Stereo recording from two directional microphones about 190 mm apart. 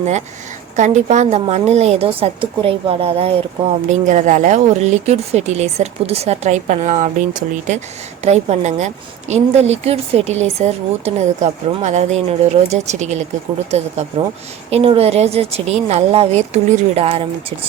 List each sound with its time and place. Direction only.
0.8 s speech: 35° right (ahead or behind)